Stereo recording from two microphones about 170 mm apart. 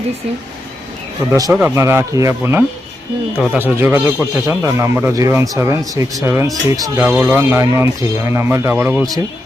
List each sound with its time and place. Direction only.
1.5 s a man's voice: 5° right (ahead or behind)